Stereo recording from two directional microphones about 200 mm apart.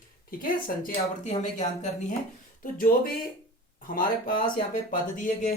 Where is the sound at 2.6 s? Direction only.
45° left (ahead or behind).